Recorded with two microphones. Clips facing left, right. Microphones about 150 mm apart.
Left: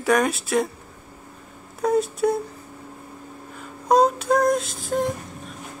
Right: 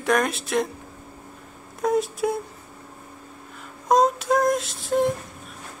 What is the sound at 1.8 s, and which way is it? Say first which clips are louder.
Speech: left 2 dB; centre (ahead or behind).